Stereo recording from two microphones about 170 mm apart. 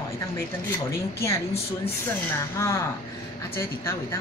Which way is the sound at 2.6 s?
20° left (ahead or behind).